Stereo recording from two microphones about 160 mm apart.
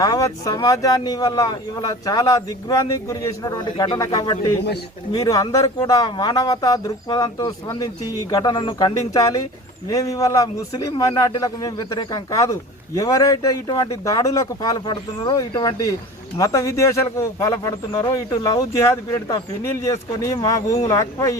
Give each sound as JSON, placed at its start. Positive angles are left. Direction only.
{"t": 0.0, "sound": "speech", "side_deg": 20}